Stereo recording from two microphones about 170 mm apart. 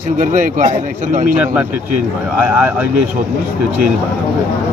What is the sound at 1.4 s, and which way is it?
Speech, 10° right (ahead or behind).